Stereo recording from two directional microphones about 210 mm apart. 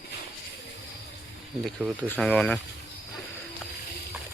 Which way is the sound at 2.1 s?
5° left (ahead or behind).